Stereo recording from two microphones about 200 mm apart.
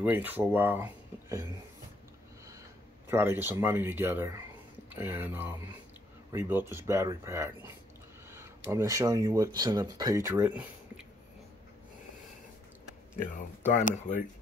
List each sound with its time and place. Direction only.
0.0 s speech: 10° right (ahead or behind)
3.1 s speech: 10° right (ahead or behind)
13.2 s speech: 35° left (ahead or behind)